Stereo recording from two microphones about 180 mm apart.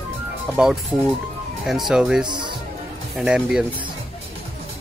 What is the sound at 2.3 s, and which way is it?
Speech, 25° right (ahead or behind).